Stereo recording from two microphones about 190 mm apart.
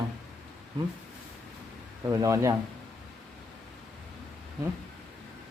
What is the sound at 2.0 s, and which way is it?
Speech, 15° right (ahead or behind).